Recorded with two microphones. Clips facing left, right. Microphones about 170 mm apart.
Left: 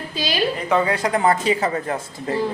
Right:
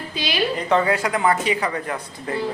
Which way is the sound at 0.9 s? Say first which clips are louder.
Even; 20° left (ahead or behind).